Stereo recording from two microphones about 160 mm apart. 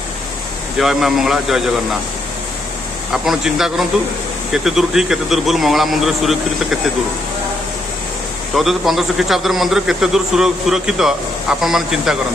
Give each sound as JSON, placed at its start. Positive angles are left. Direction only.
{"t": 0.7, "sound": "a man's voice", "side_deg": 0}
{"t": 3.1, "sound": "a man's voice", "side_deg": -5}
{"t": 8.5, "sound": "a man's voice", "side_deg": 0}